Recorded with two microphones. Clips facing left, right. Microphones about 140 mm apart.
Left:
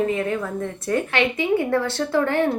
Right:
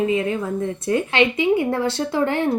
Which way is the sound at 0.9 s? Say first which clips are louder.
Right 2 dB; 20° right (ahead or behind).